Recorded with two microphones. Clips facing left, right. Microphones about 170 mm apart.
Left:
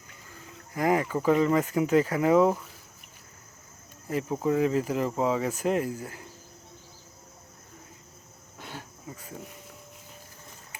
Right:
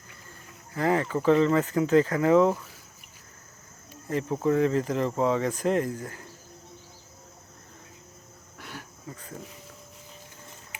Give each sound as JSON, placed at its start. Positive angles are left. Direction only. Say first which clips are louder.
{"t": 0.7, "sound": "speech", "louder": "even", "side_deg": 15}
{"t": 4.3, "sound": "speech", "louder": "right 2 dB", "side_deg": 10}
{"t": 8.5, "sound": "insect", "louder": "left 1 dB", "side_deg": 20}